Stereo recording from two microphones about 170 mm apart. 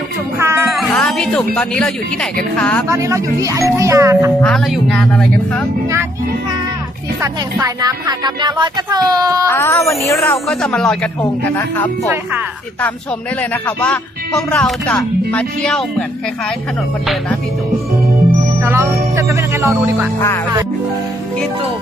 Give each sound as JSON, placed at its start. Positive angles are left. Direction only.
{"t": 0.3, "sound": "music", "side_deg": -15}
{"t": 0.8, "sound": "music", "side_deg": 5}
{"t": 1.5, "sound": "speech", "side_deg": 5}
{"t": 2.8, "sound": "speech", "side_deg": -20}
{"t": 4.4, "sound": "speech", "side_deg": 0}
{"t": 7.2, "sound": "speech", "side_deg": -20}
{"t": 9.5, "sound": "speech", "side_deg": 15}
{"t": 10.5, "sound": "speech", "side_deg": 5}
{"t": 13.5, "sound": "speech", "side_deg": 10}
{"t": 18.6, "sound": "speech", "side_deg": -15}
{"t": 20.1, "sound": "speech", "side_deg": 15}